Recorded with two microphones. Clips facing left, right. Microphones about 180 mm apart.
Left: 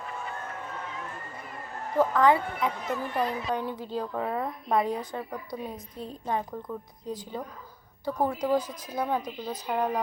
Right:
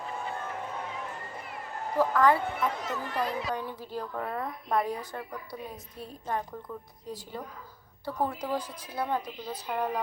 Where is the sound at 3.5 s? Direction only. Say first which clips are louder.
Left 4 dB; 20° left (ahead or behind).